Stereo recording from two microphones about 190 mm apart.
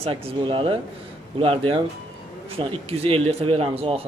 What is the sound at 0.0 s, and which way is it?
Speech, 30° right (ahead or behind).